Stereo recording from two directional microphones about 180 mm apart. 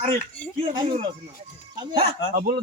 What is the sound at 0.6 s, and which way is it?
Speech, 25° right (ahead or behind).